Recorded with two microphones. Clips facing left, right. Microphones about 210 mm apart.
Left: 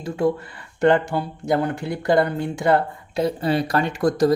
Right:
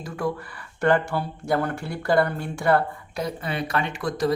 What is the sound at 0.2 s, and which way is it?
Speech, 25° left (ahead or behind).